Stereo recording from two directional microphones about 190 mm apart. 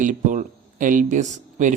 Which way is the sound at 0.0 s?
45° right (ahead or behind).